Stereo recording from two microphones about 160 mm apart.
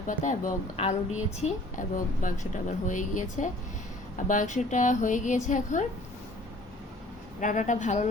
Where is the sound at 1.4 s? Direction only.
55° left (ahead or behind).